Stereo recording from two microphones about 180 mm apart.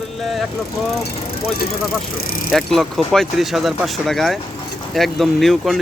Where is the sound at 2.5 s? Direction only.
Centre (ahead or behind).